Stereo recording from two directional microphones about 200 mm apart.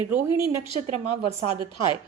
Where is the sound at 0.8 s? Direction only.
35° right (ahead or behind).